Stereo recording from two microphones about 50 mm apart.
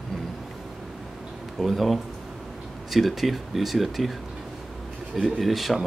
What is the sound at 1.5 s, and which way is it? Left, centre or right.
A man's voice, centre.